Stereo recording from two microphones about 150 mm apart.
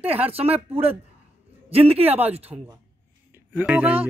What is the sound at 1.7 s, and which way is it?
Speech, 40° right (ahead or behind).